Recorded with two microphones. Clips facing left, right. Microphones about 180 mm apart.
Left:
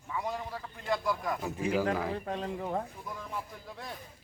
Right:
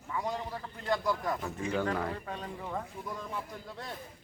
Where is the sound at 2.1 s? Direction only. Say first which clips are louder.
Left 5 dB; 35° left (ahead or behind).